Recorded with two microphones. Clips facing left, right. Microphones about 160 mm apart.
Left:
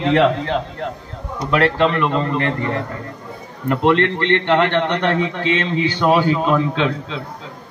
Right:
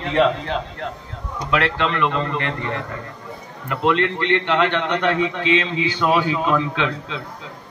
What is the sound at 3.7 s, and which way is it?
A man's voice, 50° left (ahead or behind).